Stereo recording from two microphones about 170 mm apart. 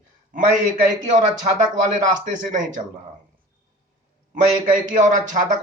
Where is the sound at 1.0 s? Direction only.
45° right (ahead or behind).